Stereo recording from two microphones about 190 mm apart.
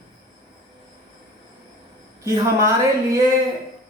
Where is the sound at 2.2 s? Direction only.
15° right (ahead or behind).